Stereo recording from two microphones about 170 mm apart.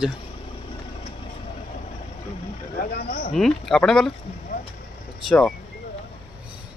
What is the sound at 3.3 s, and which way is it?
Speech, centre (ahead or behind).